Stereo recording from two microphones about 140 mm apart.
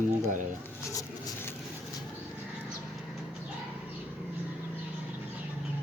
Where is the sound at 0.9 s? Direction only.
25° left (ahead or behind).